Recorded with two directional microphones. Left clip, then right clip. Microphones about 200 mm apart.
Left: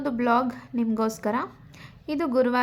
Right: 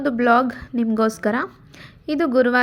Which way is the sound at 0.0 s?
15° right (ahead or behind).